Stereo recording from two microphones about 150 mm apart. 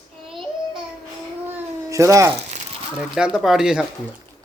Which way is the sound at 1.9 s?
20° right (ahead or behind).